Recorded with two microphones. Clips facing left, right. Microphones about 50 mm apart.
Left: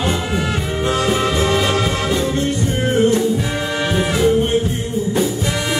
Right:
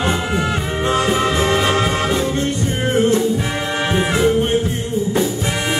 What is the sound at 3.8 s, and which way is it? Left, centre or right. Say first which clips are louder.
Music: even; right.